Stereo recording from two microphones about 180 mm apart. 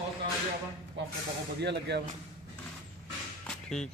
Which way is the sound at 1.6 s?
70° right (ahead or behind).